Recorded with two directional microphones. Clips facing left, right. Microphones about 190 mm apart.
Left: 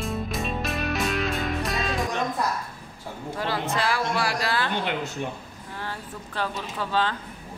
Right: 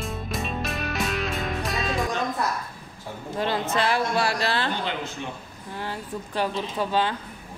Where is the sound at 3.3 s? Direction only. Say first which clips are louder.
Right 3 dB; 20° right (ahead or behind).